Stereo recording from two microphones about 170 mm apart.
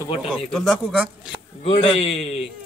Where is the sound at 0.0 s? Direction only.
30° left (ahead or behind).